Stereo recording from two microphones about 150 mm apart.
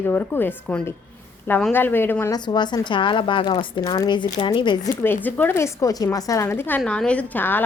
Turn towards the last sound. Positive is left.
turn(degrees=15)  # may be behind; listen again after turning